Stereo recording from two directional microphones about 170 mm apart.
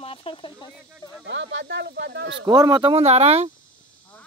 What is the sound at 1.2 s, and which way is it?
Speech, 90° right.